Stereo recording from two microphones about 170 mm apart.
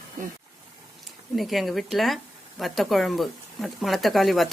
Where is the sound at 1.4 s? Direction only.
Centre (ahead or behind).